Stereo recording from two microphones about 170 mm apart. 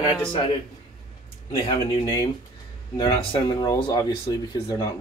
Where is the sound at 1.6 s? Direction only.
25° left (ahead or behind).